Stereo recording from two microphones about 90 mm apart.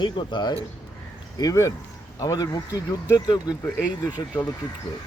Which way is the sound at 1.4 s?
40° left (ahead or behind).